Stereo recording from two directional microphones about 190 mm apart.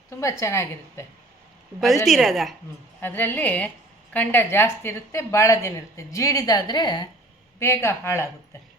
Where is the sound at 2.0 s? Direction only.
Centre (ahead or behind).